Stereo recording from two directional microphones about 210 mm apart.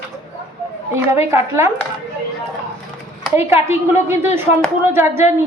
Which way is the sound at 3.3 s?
10° right (ahead or behind).